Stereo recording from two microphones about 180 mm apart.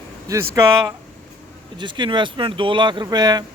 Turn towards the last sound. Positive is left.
turn(degrees=-20)  # may be behind; listen again after turning